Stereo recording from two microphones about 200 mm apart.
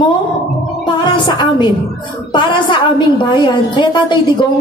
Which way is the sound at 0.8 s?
20° left (ahead or behind).